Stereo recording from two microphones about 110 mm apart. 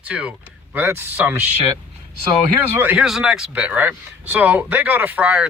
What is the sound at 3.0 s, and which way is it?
Speech, 5° right (ahead or behind).